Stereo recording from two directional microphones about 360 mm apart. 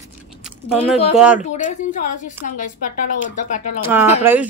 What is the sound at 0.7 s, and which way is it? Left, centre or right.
A woman's voice, centre.